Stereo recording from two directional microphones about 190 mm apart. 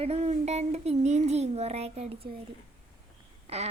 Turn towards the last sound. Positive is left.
turn(degrees=-30)  # may be behind; listen again after turning